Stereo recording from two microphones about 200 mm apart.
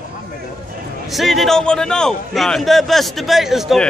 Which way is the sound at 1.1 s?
Centre (ahead or behind).